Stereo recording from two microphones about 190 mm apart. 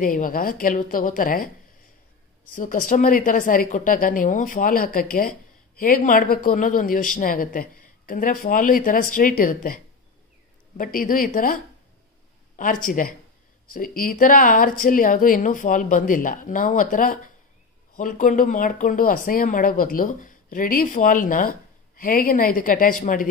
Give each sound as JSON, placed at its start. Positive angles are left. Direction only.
{"t": 0.0, "sound": "speech", "side_deg": 45}
{"t": 2.5, "sound": "speech", "side_deg": 45}
{"t": 10.8, "sound": "speech", "side_deg": 50}